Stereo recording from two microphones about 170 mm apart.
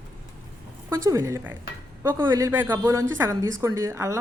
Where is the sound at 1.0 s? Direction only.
15° right (ahead or behind).